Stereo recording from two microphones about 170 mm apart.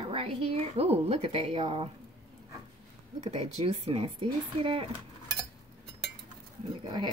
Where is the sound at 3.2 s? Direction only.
40° right (ahead or behind).